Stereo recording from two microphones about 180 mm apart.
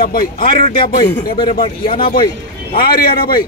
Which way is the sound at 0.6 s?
30° left (ahead or behind).